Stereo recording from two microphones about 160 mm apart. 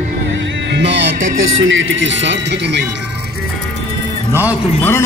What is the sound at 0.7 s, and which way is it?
Music, 90° right.